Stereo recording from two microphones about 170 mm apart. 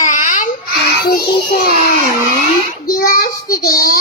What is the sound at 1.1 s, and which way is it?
Child singing, 60° left (ahead or behind).